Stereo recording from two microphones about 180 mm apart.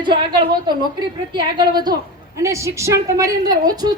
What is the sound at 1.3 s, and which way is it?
A woman's voice, 25° right (ahead or behind).